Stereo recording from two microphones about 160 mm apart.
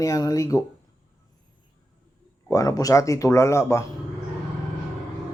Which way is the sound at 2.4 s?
20° left (ahead or behind).